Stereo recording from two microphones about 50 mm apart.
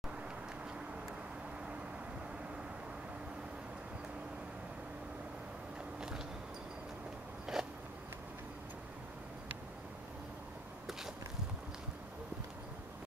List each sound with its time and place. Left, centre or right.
5.9 s vehicle: centre
7.5 s biting: centre